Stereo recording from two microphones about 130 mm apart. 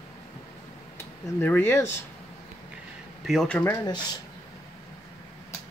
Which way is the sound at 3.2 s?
Centre (ahead or behind).